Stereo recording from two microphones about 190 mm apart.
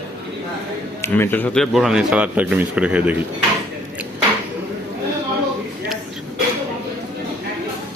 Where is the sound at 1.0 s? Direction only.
10° left (ahead or behind); by 3.1 s 5° right (ahead or behind).